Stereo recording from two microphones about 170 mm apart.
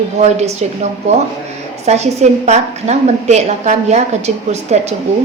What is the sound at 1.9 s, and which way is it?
A woman's voice, 40° right (ahead or behind).